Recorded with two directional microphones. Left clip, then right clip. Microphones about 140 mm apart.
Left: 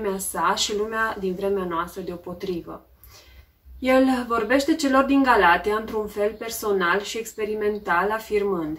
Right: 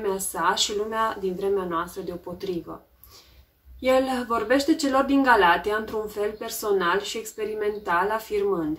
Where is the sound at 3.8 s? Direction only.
15° right (ahead or behind).